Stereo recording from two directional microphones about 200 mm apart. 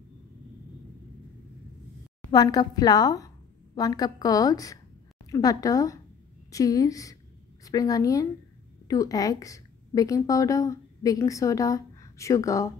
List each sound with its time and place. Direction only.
2.3 s a woman's voice: 20° left (ahead or behind)